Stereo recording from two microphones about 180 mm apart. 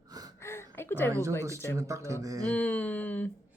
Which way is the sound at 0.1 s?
20° right (ahead or behind).